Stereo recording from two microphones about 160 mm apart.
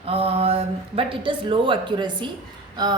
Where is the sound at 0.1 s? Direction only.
35° right (ahead or behind).